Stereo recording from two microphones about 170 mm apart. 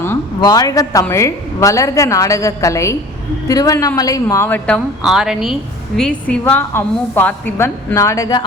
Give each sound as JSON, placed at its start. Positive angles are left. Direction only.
{"t": 0.0, "sound": "a woman's voice", "side_deg": 15}